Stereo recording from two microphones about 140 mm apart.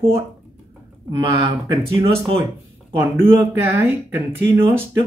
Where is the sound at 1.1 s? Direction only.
30° right (ahead or behind).